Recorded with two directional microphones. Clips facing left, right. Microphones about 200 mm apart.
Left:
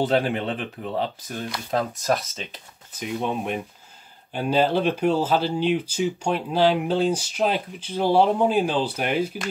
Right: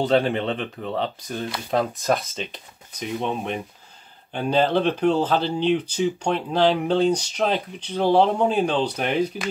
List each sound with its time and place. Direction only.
0.1 s speech: 5° left (ahead or behind)